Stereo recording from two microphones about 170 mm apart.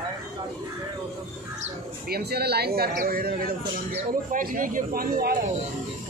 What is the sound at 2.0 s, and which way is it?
Speech, 65° right (ahead or behind).